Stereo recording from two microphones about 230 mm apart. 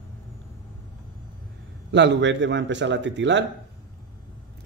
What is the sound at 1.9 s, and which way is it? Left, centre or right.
Speech, right.